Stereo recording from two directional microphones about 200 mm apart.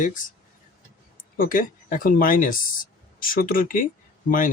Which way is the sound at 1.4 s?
40° left (ahead or behind).